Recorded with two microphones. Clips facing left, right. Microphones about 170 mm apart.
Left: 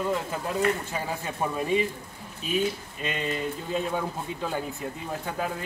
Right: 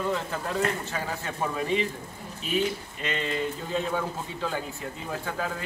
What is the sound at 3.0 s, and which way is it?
Speech, 15° left (ahead or behind).